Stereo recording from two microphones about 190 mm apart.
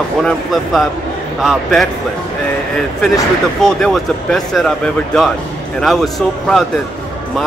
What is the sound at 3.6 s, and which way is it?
Speech, centre (ahead or behind).